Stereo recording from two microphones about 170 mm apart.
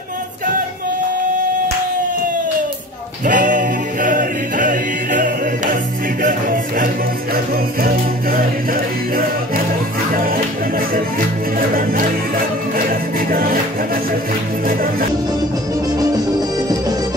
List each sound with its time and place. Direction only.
3.3 s music: 50° right (ahead or behind)
11.7 s music: 55° right (ahead or behind)
14.7 s music: 60° right (ahead or behind)
16.0 s music: 20° right (ahead or behind)